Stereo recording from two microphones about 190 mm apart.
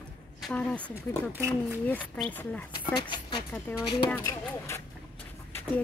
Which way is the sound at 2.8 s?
25° left (ahead or behind).